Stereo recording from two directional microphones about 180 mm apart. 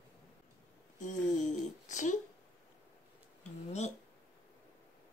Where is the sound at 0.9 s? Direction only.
45° left (ahead or behind).